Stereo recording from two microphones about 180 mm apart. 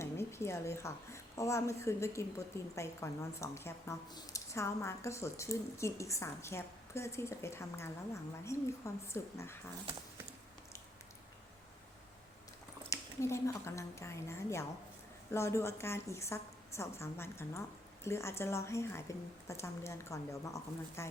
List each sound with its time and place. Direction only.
0.0 s a woman's voice: 15° left (ahead or behind)
12.9 s a woman's voice: 15° left (ahead or behind)